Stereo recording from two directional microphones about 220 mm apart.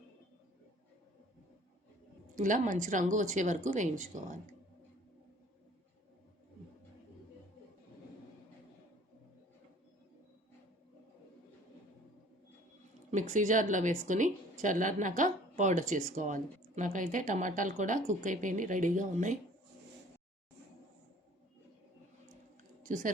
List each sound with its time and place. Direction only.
2.3 s a woman's voice: 35° right (ahead or behind)
13.1 s speech: 35° right (ahead or behind)
22.8 s speech: 35° right (ahead or behind)